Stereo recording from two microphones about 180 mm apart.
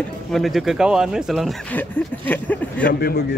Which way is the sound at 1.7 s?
10° left (ahead or behind).